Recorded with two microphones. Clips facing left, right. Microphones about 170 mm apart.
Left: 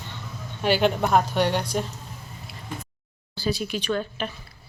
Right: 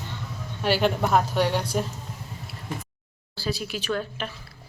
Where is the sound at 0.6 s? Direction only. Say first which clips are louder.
Left 1 dB; centre (ahead or behind).